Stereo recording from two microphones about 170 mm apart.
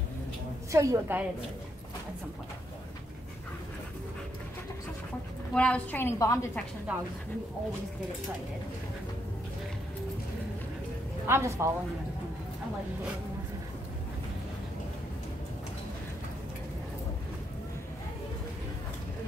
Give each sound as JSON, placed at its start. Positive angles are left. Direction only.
{"t": 0.7, "sound": "a woman's voice", "side_deg": -15}
{"t": 5.5, "sound": "a woman's voice", "side_deg": 5}
{"t": 6.9, "sound": "a woman's voice", "side_deg": -10}
{"t": 11.2, "sound": "a woman's voice", "side_deg": -15}